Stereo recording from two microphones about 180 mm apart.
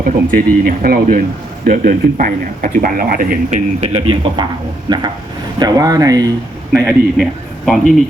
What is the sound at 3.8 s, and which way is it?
Speech, 30° right (ahead or behind).